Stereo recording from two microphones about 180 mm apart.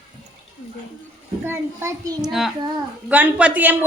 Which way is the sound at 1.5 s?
15° right (ahead or behind).